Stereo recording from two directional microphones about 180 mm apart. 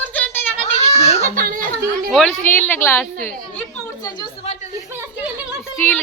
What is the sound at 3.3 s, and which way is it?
Chatter, 10° left (ahead or behind).